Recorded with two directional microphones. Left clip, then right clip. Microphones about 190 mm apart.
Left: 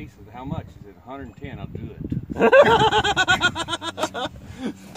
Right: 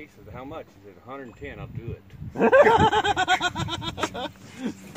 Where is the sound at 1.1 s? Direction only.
60° left (ahead or behind).